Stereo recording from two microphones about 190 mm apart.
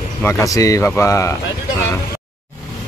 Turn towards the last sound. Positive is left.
turn(degrees=15)  # may be behind; listen again after turning